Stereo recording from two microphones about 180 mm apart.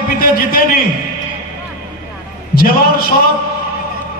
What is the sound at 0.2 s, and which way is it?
Speech, 55° left (ahead or behind).